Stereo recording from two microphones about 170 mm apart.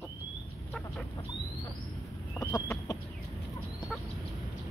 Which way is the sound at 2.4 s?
20° left (ahead or behind).